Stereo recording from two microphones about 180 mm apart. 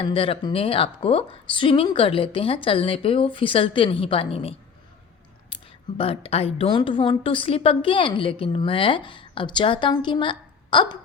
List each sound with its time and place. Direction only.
0.0 s speech: 30° left (ahead or behind)
6.0 s a woman's voice: 30° left (ahead or behind)